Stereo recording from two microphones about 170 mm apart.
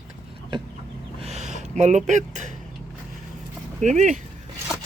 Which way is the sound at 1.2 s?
40° right (ahead or behind).